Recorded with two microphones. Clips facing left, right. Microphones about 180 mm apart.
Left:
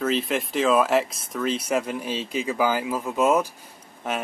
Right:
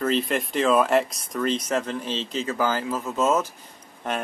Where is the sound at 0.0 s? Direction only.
Centre (ahead or behind).